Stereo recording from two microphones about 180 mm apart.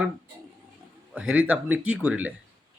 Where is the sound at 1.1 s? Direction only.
5° right (ahead or behind).